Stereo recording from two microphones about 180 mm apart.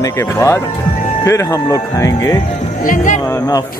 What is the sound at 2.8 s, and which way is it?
Speech, 45° left (ahead or behind).